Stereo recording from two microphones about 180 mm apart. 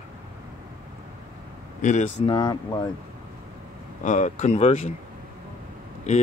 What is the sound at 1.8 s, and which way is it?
Speech, 40° left (ahead or behind).